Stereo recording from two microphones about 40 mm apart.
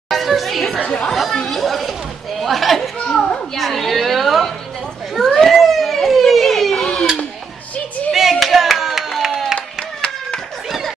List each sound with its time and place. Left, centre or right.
0.1 s chatter: centre
0.8 s chatter: centre
1.3 s chatter: centre
2.4 s a sound: centre
6.8 s a sound: centre
8.1 s clapping: centre